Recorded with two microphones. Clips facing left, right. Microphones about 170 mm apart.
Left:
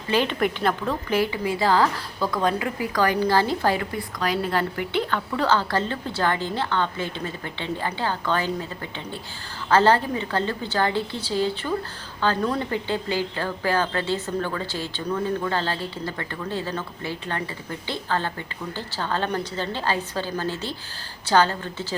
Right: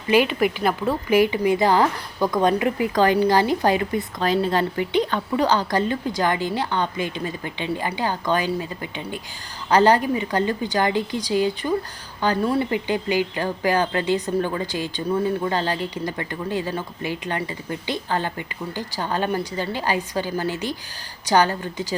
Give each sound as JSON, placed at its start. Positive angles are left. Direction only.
{"t": 0.1, "sound": "a woman's voice", "side_deg": -10}